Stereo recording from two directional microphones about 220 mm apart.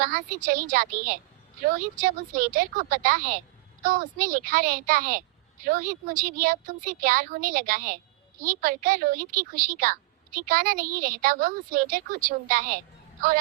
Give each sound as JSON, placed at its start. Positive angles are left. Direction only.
{"t": 0.0, "sound": "a woman's voice", "side_deg": -40}